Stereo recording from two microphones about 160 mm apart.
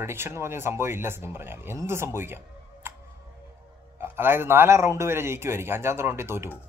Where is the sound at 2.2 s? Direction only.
15° right (ahead or behind).